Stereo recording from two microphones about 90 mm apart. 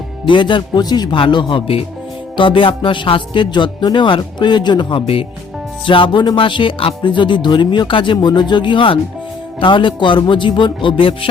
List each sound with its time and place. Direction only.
0.3 s speech: 60° left (ahead or behind)
1.2 s speech: 65° left (ahead or behind); by 1.8 s 80° left
2.3 s speech: 70° left (ahead or behind)
5.8 s speech: 70° left (ahead or behind); by 11.3 s 85° left